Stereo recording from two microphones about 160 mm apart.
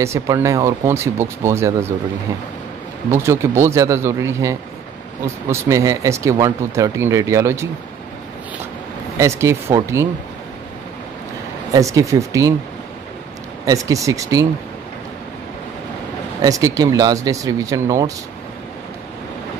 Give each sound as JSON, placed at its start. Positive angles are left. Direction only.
{"t": 0.0, "sound": "speech", "side_deg": -20}
{"t": 3.1, "sound": "speech", "side_deg": -15}
{"t": 9.2, "sound": "speech", "side_deg": -15}
{"t": 11.7, "sound": "speech", "side_deg": -20}
{"t": 13.7, "sound": "speech", "side_deg": -20}
{"t": 16.3, "sound": "speech", "side_deg": -20}